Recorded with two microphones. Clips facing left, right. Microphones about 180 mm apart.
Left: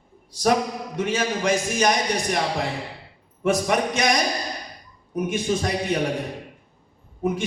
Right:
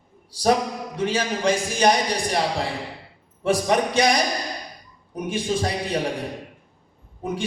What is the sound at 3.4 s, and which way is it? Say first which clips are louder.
A man's voice: right 1 dB; 30° right (ahead or behind).